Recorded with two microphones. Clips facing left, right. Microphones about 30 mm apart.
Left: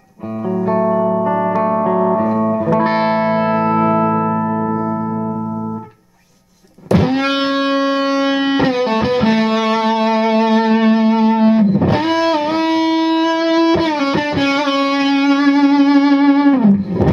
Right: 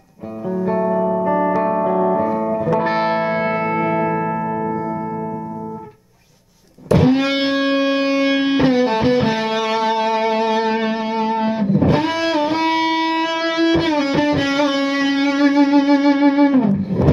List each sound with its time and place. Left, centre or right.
0.7 s music: centre
2.8 s music: left
3.3 s music: left
3.9 s music: centre
6.9 s music: left
7.2 s music: left
12.6 s music: right
13.4 s music: left
16.6 s guitar: left